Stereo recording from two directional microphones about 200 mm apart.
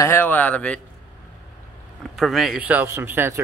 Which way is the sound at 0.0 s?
10° left (ahead or behind).